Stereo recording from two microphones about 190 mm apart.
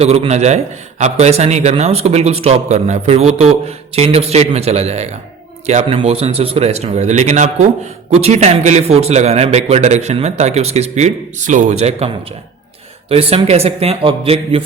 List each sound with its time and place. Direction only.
0.0 s a man's voice: 35° right (ahead or behind)